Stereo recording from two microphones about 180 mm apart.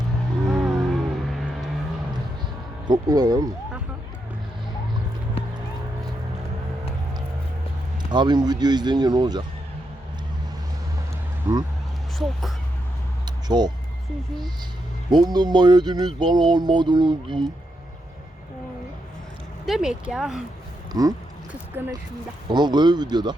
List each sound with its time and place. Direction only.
0.4 s music: 5° right (ahead or behind)
2.8 s speech: 20° right (ahead or behind)
8.1 s speech: 25° right (ahead or behind)
11.5 s speech: 20° right (ahead or behind)
12.2 s speech: centre (ahead or behind)
13.2 s vehicle: 25° right (ahead or behind)
15.1 s speech: 20° right (ahead or behind)
19.6 s speech: 5° right (ahead or behind)
20.9 s speech: 20° right (ahead or behind)
22.5 s speech: 25° right (ahead or behind)